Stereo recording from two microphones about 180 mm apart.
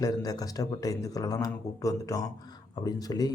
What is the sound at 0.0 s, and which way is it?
A man's voice, 20° left (ahead or behind).